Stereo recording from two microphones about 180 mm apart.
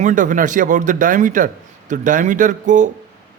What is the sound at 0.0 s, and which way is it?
Speech, 45° right (ahead or behind).